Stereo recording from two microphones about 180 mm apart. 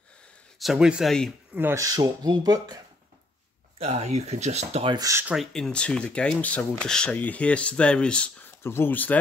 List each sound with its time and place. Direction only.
0.6 s speech: centre (ahead or behind)
1.5 s speech: 10° right (ahead or behind)
3.7 s speech: 35° right (ahead or behind)
4.9 s speech: 15° right (ahead or behind)
5.3 s speech: centre (ahead or behind)